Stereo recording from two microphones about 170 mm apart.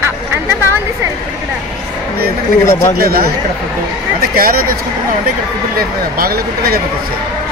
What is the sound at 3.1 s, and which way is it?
Speech, 65° right (ahead or behind).